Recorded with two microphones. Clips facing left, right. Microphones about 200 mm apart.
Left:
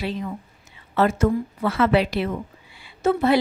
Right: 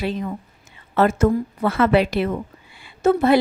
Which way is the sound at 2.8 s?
50° right (ahead or behind).